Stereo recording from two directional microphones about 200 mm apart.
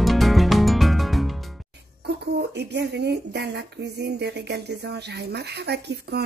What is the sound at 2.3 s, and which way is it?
Speech, 55° right (ahead or behind).